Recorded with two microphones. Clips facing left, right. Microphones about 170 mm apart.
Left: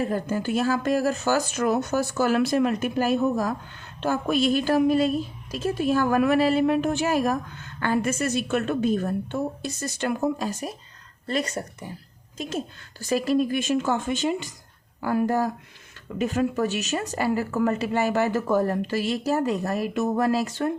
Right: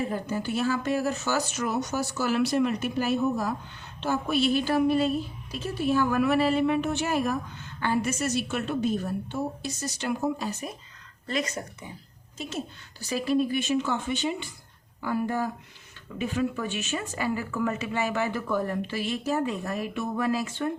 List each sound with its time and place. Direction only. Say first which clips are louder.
0.1 s a woman's voice: left 4 dB; 50° left (ahead or behind)
5.5 s a woman's voice: left 7 dB; 90° left
5.7 s a woman's voice: left 2 dB; 45° left (ahead or behind)
11.3 s speech: left 3 dB; 35° left (ahead or behind)
13.0 s a woman's voice: left 3 dB; 45° left (ahead or behind)